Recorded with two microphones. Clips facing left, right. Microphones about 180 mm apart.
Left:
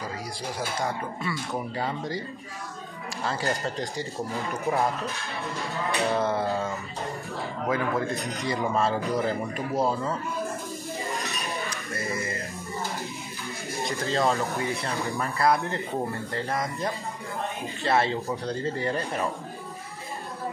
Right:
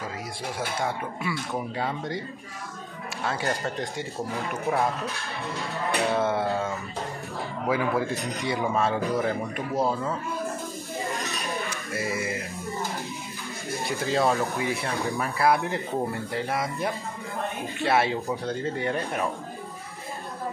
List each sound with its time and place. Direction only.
0.6 s speech: centre (ahead or behind)
3.4 s speech: centre (ahead or behind)
11.5 s cutlery: centre (ahead or behind)
14.1 s speech: centre (ahead or behind)